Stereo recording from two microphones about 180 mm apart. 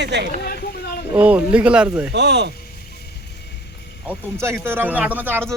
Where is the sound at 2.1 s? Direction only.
70° right (ahead or behind).